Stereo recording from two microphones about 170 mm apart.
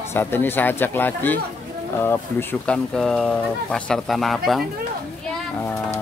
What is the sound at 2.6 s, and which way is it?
Speech, 5° left (ahead or behind).